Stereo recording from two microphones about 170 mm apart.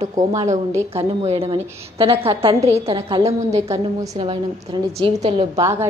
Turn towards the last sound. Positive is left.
turn(degrees=-15)  # may be behind; listen again after turning